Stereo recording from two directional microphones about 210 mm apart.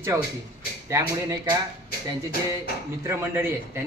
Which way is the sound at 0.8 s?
15° right (ahead or behind).